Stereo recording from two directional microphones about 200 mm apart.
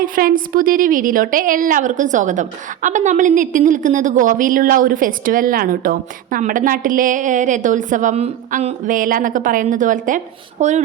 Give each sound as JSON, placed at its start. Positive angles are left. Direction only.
{"t": 0.0, "sound": "a woman's voice", "side_deg": -45}